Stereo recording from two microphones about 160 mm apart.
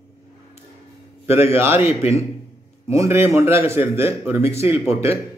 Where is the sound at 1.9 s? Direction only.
40° left (ahead or behind).